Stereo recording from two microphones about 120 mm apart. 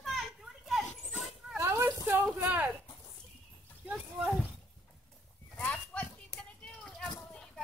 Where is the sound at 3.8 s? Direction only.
10° right (ahead or behind).